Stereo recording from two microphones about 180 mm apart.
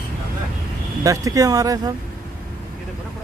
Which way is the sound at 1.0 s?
20° right (ahead or behind).